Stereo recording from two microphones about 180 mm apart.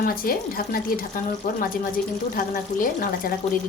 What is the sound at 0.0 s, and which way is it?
A woman's voice, 55° left (ahead or behind).